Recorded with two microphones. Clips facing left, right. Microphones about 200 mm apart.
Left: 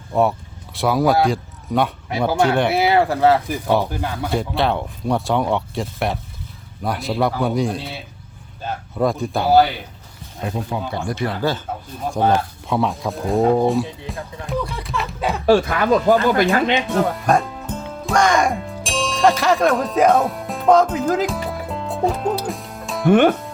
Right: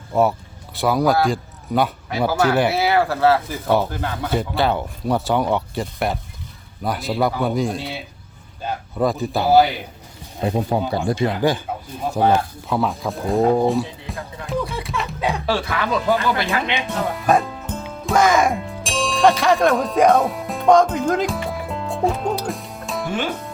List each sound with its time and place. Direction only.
0.1 s a man's voice: centre (ahead or behind)
2.7 s speech: 20° left (ahead or behind)
4.3 s speech: centre (ahead or behind)
9.0 s speech: centre (ahead or behind)
10.4 s speech: 30° right (ahead or behind)
11.1 s speech: 15° right (ahead or behind); by 14.2 s centre (ahead or behind)
14.4 s music: centre (ahead or behind)
15.4 s speech: 45° left (ahead or behind)
17.1 s speech: centre (ahead or behind)
23.0 s speech: 60° left (ahead or behind)